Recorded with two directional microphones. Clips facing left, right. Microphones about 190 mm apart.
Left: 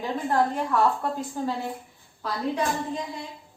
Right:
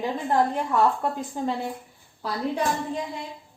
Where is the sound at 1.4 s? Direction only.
20° right (ahead or behind).